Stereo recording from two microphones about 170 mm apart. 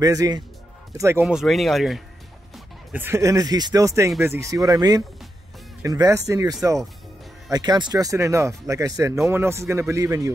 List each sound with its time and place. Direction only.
0.0 s a man's voice: 20° right (ahead or behind)
1.2 s speech: centre (ahead or behind)
2.5 s a man's voice: 10° right (ahead or behind)